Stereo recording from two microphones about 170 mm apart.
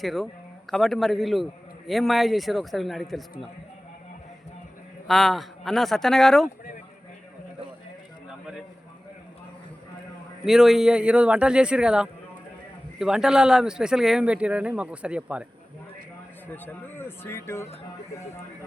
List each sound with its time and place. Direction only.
0.0 s speech: centre (ahead or behind)
5.0 s speech: centre (ahead or behind)
10.4 s speech: centre (ahead or behind)
16.5 s speech: 10° left (ahead or behind)